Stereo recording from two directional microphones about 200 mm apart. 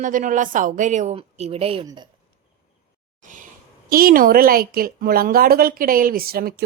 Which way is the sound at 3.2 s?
40° right (ahead or behind).